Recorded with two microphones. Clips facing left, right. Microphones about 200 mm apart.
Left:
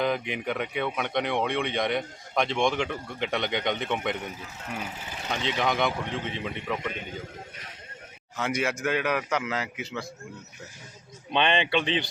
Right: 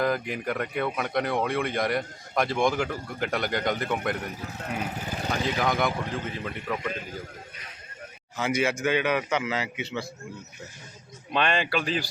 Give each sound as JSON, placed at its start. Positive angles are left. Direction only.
{"t": 0.0, "sound": "speech", "side_deg": 0}
{"t": 5.0, "sound": "vehicle", "side_deg": -40}
{"t": 5.5, "sound": "speech", "side_deg": 0}
{"t": 8.4, "sound": "speech", "side_deg": 0}
{"t": 11.3, "sound": "speech", "side_deg": 0}